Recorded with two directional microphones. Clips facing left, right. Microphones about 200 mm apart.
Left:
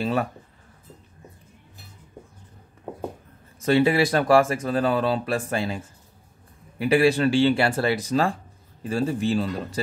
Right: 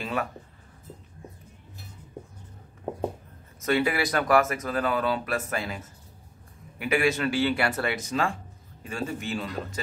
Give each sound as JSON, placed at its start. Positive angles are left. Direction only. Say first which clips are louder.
{"t": 0.0, "sound": "a sound", "louder": "left 6 dB", "side_deg": 35}
{"t": 3.6, "sound": "speech", "louder": "left 6 dB", "side_deg": 30}
{"t": 6.8, "sound": "speech", "louder": "left 6 dB", "side_deg": 30}